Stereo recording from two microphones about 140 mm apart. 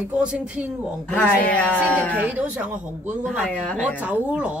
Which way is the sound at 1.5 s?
10° left (ahead or behind).